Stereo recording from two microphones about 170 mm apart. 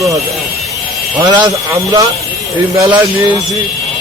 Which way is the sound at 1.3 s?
25° right (ahead or behind).